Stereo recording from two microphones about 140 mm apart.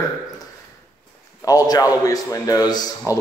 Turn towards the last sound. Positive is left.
turn(degrees=30)  # may be behind; listen again after turning